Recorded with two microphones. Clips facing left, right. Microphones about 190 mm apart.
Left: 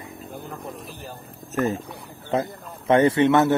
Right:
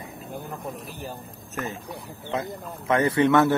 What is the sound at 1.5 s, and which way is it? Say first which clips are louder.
Speech: left 9 dB; centre (ahead or behind).